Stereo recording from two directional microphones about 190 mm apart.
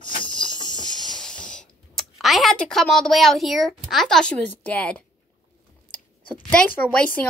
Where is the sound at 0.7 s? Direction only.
Centre (ahead or behind).